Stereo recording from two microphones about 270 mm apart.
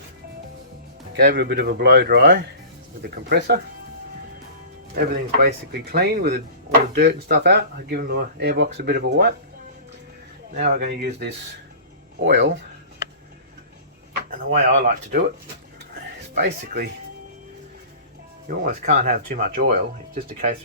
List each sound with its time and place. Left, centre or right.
1.1 s speech: right
4.9 s speech: right
10.6 s speech: right
14.3 s speech: right
16.3 s speech: right
18.4 s speech: right